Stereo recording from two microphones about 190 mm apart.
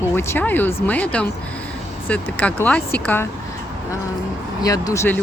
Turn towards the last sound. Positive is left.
turn(degrees=10)  # may be behind; listen again after turning